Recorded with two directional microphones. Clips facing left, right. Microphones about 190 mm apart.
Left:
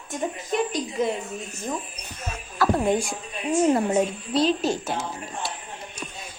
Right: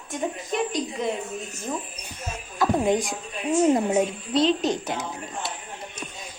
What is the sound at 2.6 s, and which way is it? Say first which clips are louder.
A woman's voice: even; 20° right (ahead or behind).